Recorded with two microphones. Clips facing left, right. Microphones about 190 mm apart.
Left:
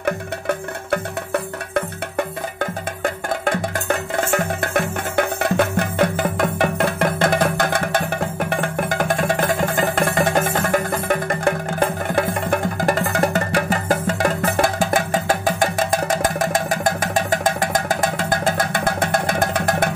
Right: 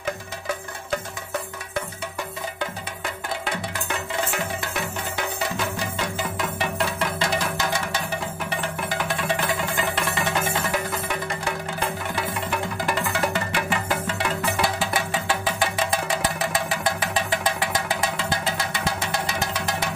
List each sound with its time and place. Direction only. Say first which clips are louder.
0.0 s music: left 8 dB; 60° left (ahead or behind)